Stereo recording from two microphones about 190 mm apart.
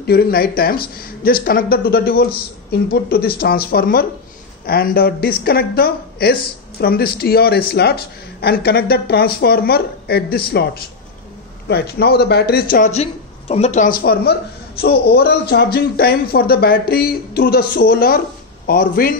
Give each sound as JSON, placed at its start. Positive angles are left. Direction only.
{"t": 0.0, "sound": "a man's voice", "side_deg": 55}
{"t": 12.9, "sound": "speech", "side_deg": 35}